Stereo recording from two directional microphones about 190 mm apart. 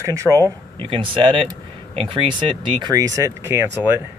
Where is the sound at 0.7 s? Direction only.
25° right (ahead or behind).